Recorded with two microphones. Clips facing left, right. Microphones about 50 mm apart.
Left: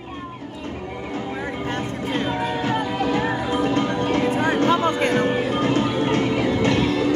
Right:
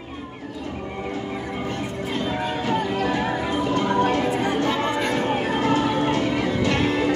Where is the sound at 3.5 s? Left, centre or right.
Left.